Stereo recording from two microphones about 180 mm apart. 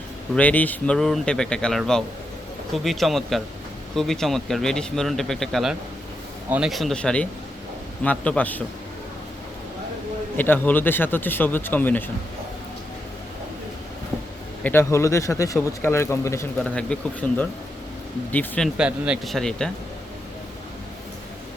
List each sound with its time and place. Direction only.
0.3 s speech: 10° left (ahead or behind)
10.3 s speech: 10° left (ahead or behind)
14.6 s speech: 15° left (ahead or behind)
18.8 s speech: 5° right (ahead or behind)